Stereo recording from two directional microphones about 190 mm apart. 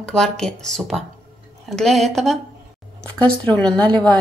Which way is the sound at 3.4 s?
10° left (ahead or behind).